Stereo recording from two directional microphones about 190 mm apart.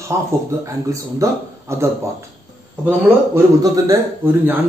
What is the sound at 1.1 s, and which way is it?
A man's voice, 15° right (ahead or behind).